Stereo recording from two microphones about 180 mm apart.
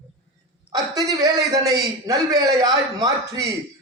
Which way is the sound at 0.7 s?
20° right (ahead or behind).